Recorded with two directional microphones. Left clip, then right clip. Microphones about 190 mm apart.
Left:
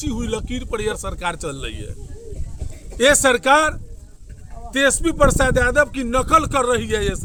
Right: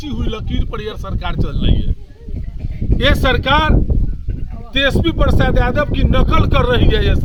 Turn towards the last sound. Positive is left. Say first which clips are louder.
# right 4 dB
turn(degrees=20)  # may be behind; listen again after turning